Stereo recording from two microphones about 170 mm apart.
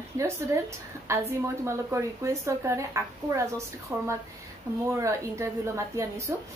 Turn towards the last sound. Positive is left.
turn(degrees=-15)  # may be behind; listen again after turning